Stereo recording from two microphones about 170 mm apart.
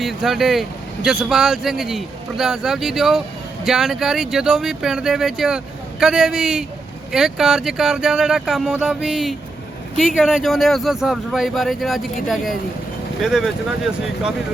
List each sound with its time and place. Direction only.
0.0 s a man's voice: centre (ahead or behind)